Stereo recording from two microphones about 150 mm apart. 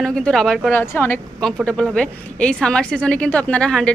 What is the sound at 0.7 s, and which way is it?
Speech, 15° left (ahead or behind).